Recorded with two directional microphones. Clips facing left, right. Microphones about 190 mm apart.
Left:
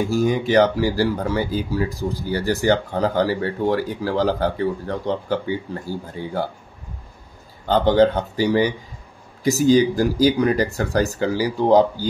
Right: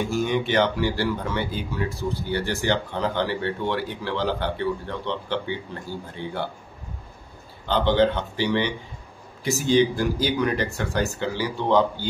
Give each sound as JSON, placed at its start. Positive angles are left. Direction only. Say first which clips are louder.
{"t": 0.1, "sound": "speech", "louder": "left 6 dB", "side_deg": 35}
{"t": 7.6, "sound": "speech", "louder": "left 4 dB", "side_deg": 45}